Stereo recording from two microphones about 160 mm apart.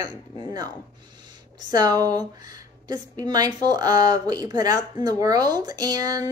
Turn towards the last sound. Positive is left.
turn(degrees=-25)  # may be behind; listen again after turning